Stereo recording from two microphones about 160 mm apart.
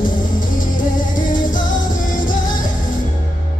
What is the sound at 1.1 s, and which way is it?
Music, 55° left (ahead or behind).